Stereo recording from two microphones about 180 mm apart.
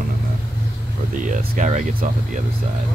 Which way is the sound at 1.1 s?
45° right (ahead or behind).